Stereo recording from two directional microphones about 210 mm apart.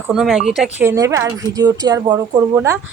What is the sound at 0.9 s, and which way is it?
Speech, 15° right (ahead or behind).